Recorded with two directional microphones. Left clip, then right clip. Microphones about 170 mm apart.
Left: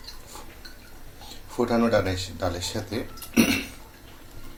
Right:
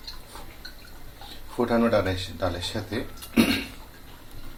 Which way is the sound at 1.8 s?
20° left (ahead or behind).